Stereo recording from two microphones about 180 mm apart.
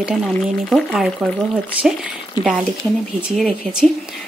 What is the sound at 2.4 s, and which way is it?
Speech, 25° left (ahead or behind).